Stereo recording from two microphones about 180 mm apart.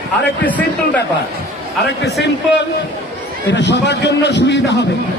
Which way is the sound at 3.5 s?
70° left (ahead or behind).